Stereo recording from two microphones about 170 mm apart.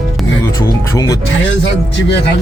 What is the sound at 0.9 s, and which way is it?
Speech, 20° left (ahead or behind).